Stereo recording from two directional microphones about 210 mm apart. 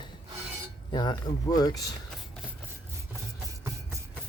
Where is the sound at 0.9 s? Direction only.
20° left (ahead or behind).